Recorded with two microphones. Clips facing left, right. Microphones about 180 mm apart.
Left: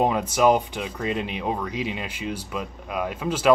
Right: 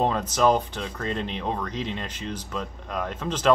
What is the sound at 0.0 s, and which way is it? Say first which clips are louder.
Speech: left 2 dB; 10° left (ahead or behind).